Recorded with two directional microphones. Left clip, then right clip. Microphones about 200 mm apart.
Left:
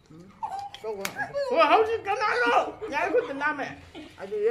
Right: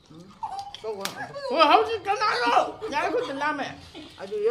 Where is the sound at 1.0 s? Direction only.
55° left (ahead or behind).